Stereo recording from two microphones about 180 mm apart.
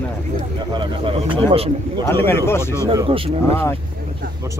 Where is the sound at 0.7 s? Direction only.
30° right (ahead or behind).